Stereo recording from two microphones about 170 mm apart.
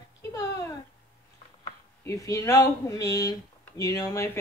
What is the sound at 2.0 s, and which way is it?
Speech, 20° left (ahead or behind).